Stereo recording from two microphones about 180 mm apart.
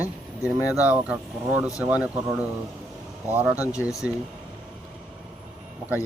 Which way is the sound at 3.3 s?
10° right (ahead or behind).